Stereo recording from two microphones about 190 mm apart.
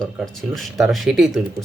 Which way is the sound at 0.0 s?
Centre (ahead or behind).